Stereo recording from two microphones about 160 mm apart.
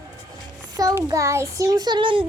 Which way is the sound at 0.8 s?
20° right (ahead or behind).